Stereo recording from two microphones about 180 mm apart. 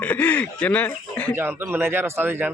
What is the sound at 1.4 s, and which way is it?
A man's voice, 10° right (ahead or behind).